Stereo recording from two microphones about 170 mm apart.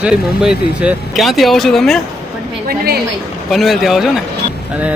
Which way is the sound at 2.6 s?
65° right (ahead or behind).